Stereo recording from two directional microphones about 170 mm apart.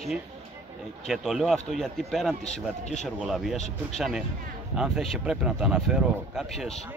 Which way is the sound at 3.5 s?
40° left (ahead or behind).